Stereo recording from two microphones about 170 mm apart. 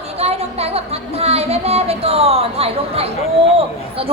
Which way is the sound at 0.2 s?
35° right (ahead or behind).